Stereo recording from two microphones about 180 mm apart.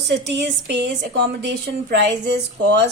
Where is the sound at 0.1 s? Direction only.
75° right (ahead or behind).